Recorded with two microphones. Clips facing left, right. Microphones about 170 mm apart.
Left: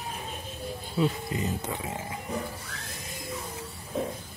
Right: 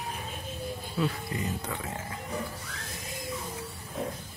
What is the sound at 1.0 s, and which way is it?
Speech, 20° left (ahead or behind).